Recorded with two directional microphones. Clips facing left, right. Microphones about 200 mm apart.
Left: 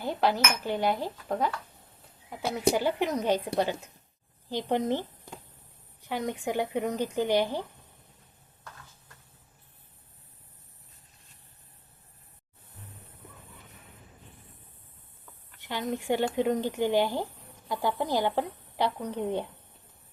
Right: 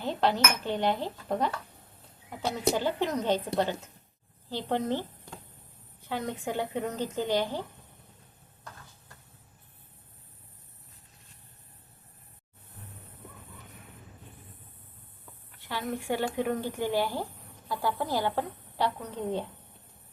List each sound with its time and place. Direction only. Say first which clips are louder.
0.0 s a woman's voice: even; 10° left (ahead or behind)
6.0 s a sound: left 2 dB; 15° left (ahead or behind)
6.4 s a woman's voice: left 4 dB; 15° left (ahead or behind)
15.6 s a woman's voice: left 2 dB; 20° left (ahead or behind)